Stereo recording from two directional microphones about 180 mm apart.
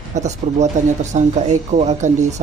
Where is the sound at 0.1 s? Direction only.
40° right (ahead or behind).